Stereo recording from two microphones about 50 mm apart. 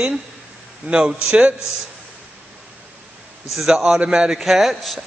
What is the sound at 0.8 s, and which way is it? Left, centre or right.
Speech, right.